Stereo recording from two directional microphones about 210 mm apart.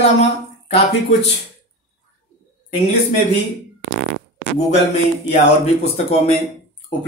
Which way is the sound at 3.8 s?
55° right (ahead or behind).